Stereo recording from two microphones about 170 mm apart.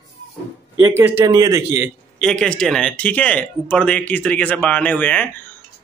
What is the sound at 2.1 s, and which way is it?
A man's voice, 5° left (ahead or behind).